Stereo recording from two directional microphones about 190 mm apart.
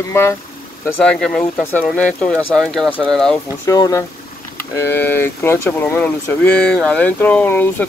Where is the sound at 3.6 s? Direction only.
15° left (ahead or behind).